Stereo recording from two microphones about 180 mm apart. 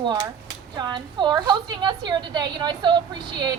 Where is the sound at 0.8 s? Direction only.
25° right (ahead or behind).